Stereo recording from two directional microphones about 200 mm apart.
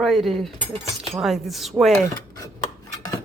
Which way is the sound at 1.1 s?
Centre (ahead or behind).